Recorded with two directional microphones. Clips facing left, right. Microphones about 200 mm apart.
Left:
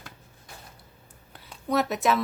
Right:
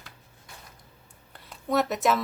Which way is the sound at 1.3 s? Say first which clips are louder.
Even; centre (ahead or behind).